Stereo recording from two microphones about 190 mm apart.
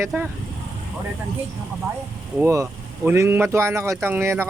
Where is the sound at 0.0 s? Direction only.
5° right (ahead or behind).